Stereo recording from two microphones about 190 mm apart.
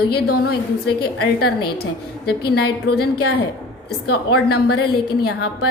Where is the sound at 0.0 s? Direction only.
55° left (ahead or behind).